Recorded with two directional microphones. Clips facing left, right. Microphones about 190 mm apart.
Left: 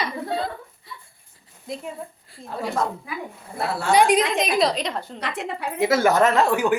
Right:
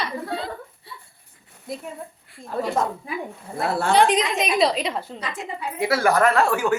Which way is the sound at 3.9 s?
10° left (ahead or behind).